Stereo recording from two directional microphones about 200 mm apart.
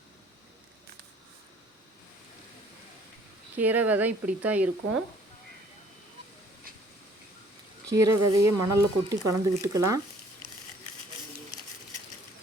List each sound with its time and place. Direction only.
3.6 s speech: 10° right (ahead or behind)
7.9 s speech: 15° right (ahead or behind)